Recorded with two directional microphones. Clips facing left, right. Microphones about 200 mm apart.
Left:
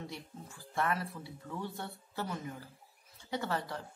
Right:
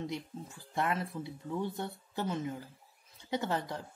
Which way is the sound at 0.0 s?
20° right (ahead or behind).